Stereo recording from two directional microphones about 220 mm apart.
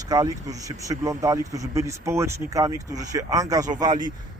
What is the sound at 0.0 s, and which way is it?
Speech, 15° right (ahead or behind).